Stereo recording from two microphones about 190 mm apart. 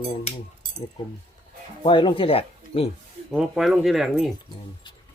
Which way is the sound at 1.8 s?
25° left (ahead or behind).